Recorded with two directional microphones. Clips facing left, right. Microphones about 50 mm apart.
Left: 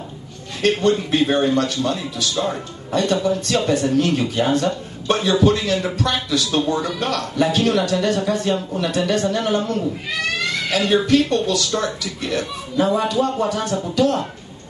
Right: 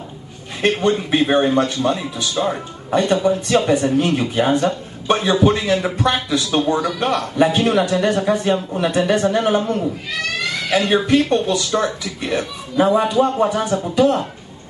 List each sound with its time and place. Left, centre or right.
0.6 s speech: centre
10.9 s speech: centre